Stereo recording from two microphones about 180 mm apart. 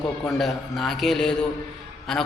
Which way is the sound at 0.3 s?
Centre (ahead or behind).